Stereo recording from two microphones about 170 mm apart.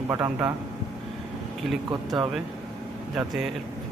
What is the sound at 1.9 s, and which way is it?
Speech, 20° right (ahead or behind).